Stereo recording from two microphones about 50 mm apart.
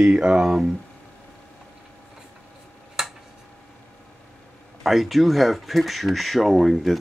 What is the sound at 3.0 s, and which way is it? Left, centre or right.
Tick-tock, centre.